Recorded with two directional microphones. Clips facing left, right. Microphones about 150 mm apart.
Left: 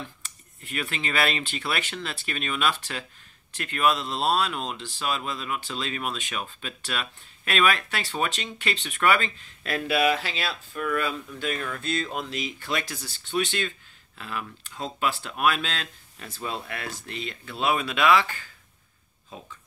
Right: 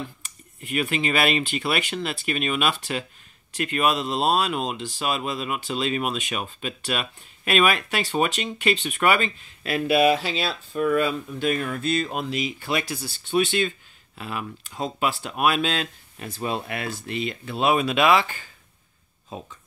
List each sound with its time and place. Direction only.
0.0 s speech: 10° right (ahead or behind)